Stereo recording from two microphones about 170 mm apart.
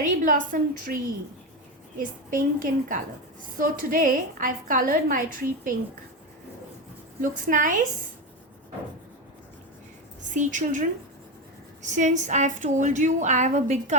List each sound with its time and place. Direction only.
0.3 s a woman's voice: 50° right (ahead or behind)
2.0 s a woman's voice: 50° right (ahead or behind)
7.2 s a woman's voice: 50° right (ahead or behind)
10.3 s a woman's voice: 45° right (ahead or behind)